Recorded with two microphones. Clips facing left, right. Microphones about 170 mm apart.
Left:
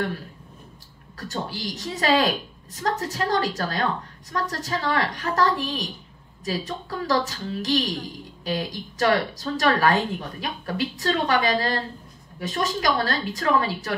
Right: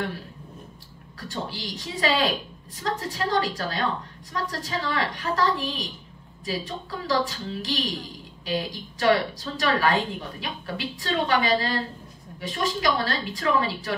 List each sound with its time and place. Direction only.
1.1 s a woman's voice: 45° left (ahead or behind)